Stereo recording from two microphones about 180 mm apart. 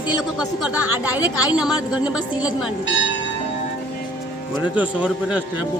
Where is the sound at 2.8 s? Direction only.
90° left.